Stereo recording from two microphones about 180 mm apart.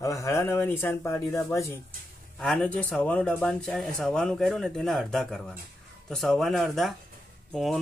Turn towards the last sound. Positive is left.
turn(degrees=0)  # may be behind; listen again after turning